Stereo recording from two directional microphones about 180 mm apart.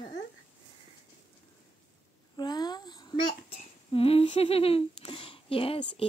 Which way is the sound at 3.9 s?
35° left (ahead or behind).